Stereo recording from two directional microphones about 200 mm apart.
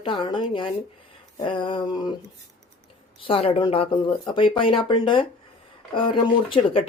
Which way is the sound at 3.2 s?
30° left (ahead or behind).